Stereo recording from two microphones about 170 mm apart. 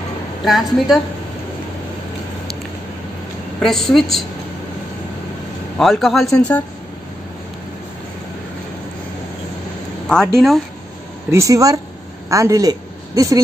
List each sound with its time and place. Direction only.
0.5 s speech: centre (ahead or behind)
3.5 s speech: centre (ahead or behind)
5.8 s speech: centre (ahead or behind)
10.0 s speech: 5° left (ahead or behind)
11.3 s a woman's voice: 20° right (ahead or behind)